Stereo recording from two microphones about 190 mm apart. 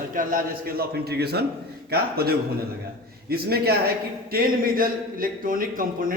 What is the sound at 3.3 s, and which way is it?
A man's voice, 55° right (ahead or behind).